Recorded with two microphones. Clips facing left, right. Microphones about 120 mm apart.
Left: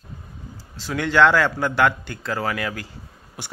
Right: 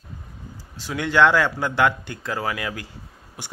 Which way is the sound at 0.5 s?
15° right (ahead or behind).